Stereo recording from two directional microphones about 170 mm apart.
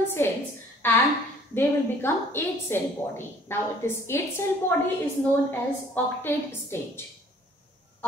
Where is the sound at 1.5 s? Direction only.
15° left (ahead or behind).